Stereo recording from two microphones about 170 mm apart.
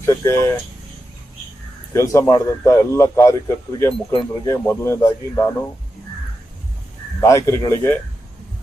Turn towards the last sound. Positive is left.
turn(degrees=15)  # may be behind; listen again after turning